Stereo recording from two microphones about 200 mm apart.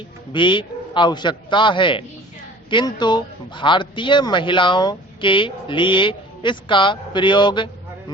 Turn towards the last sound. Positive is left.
turn(degrees=25)  # may be behind; listen again after turning